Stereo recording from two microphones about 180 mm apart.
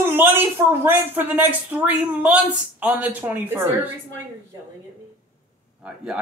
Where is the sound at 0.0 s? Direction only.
10° right (ahead or behind).